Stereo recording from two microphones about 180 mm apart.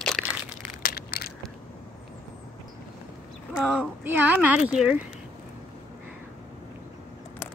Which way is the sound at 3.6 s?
5° right (ahead or behind).